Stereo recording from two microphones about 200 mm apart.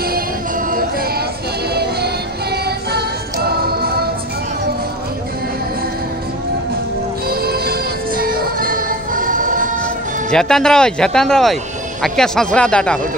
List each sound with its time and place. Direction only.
0.7 s a sound: 45° right (ahead or behind)
2.5 s music: 55° right (ahead or behind)
7.2 s music: 50° right (ahead or behind)
10.3 s speech: 5° left (ahead or behind)